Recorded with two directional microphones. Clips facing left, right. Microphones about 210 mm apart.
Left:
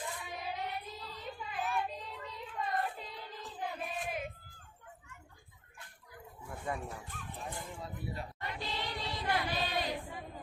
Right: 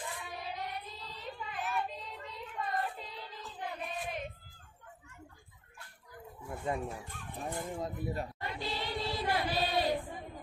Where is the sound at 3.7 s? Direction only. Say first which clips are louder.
Right 2 dB; 5° left (ahead or behind).